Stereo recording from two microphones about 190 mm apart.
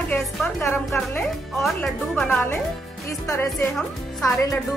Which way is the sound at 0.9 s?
Centre (ahead or behind).